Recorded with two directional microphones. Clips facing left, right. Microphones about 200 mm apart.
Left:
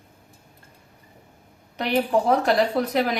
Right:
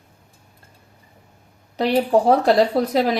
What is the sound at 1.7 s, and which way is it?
A woman's voice, 35° right (ahead or behind).